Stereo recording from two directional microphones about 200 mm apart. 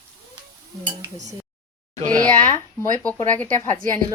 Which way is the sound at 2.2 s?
5° left (ahead or behind).